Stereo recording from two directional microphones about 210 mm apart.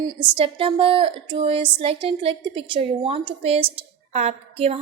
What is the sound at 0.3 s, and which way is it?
A woman's voice, 25° right (ahead or behind).